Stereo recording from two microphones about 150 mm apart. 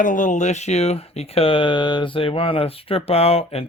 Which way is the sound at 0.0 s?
60° left (ahead or behind).